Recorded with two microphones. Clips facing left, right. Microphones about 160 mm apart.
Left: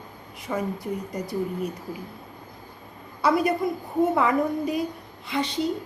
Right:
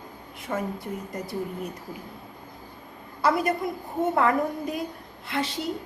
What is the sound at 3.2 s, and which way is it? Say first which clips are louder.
A woman's voice: left 2 dB; centre (ahead or behind).